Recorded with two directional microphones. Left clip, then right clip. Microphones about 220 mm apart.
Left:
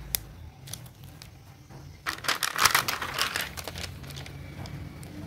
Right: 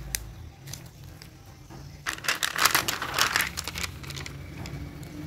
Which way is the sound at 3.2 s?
20° right (ahead or behind).